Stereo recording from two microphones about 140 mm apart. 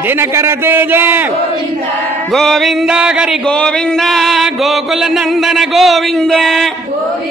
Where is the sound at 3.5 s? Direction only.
5° left (ahead or behind).